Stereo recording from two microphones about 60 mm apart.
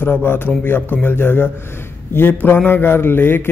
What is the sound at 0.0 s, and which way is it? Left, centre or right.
A man's voice, left.